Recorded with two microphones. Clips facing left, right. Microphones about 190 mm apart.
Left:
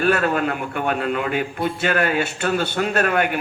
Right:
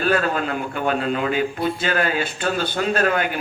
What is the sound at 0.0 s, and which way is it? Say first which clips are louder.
A man's voice: left 2 dB; 55° left (ahead or behind).